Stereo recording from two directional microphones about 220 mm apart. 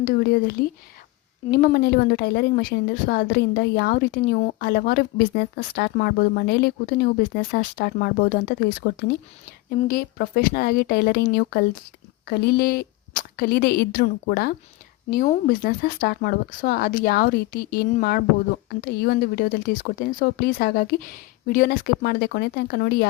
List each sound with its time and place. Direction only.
0.0 s a woman's voice: 45° left (ahead or behind)